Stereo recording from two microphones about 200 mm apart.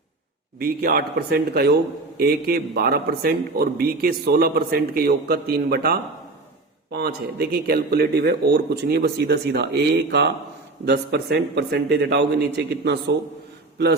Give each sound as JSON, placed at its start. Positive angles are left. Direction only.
{"t": 0.6, "sound": "a man's voice", "side_deg": -50}